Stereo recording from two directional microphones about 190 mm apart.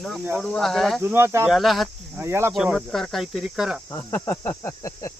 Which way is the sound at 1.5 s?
Centre (ahead or behind).